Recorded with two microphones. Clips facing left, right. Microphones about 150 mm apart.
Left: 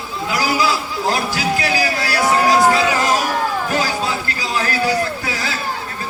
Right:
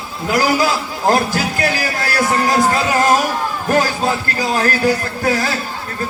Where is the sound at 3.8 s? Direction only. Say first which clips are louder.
Right 4 dB; 45° right (ahead or behind).